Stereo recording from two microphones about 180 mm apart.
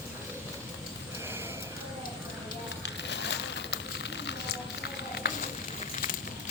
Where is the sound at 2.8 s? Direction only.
75° left (ahead or behind).